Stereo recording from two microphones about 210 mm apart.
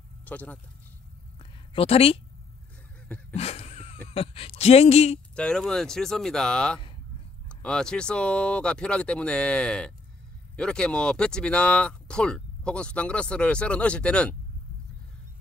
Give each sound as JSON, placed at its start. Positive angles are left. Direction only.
{"t": 0.2, "sound": "speech", "side_deg": 5}
{"t": 1.7, "sound": "a woman's voice", "side_deg": 25}
{"t": 3.3, "sound": "a sound", "side_deg": 30}
{"t": 4.1, "sound": "speech", "side_deg": 25}
{"t": 5.3, "sound": "speech", "side_deg": 5}